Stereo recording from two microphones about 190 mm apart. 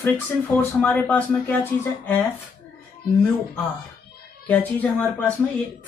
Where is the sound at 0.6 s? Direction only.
10° left (ahead or behind).